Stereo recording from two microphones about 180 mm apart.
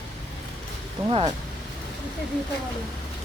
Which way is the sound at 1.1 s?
30° right (ahead or behind).